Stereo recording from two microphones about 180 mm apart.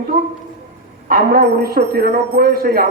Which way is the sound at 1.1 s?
55° right (ahead or behind).